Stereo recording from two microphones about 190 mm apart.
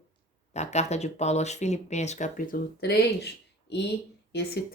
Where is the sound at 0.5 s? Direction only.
35° left (ahead or behind).